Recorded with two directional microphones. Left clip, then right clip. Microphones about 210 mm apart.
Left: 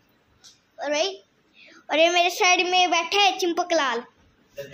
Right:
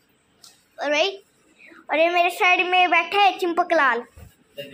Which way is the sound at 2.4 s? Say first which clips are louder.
Right 1 dB; 30° left (ahead or behind).